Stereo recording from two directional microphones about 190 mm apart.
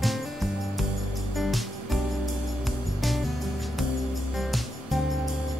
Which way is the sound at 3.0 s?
Centre (ahead or behind).